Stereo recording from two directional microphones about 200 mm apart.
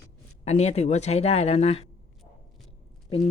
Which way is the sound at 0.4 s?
30° left (ahead or behind).